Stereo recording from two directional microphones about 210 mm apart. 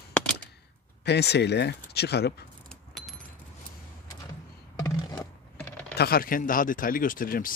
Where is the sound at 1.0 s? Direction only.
50° left (ahead or behind).